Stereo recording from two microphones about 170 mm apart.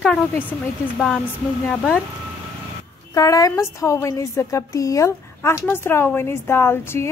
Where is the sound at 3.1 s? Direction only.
20° left (ahead or behind).